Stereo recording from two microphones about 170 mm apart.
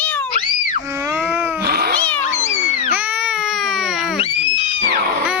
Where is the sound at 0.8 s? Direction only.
15° right (ahead or behind).